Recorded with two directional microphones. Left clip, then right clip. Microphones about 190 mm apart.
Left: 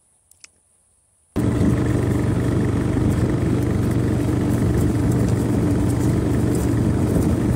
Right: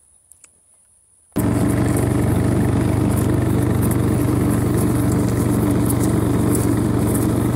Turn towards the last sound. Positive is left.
turn(degrees=-30)  # may be behind; listen again after turning